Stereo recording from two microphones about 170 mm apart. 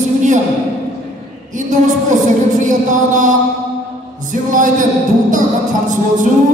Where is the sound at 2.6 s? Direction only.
50° right (ahead or behind).